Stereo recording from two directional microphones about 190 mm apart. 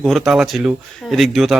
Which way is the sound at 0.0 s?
Centre (ahead or behind).